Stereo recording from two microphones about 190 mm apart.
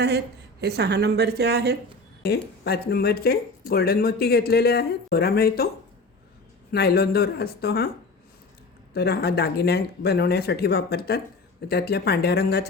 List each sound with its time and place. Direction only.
0.6 s a woman's voice: 60° right (ahead or behind)
2.2 s speech: 60° left (ahead or behind)
6.7 s speech: 55° left (ahead or behind)
8.9 s speech: 55° left (ahead or behind)